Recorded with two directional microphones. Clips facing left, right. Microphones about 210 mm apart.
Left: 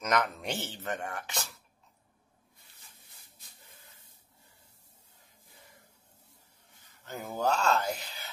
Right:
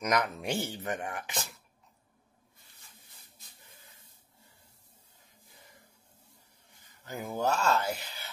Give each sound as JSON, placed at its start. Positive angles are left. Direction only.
{"t": 0.0, "sound": "speech", "side_deg": -10}
{"t": 7.2, "sound": "speech", "side_deg": -10}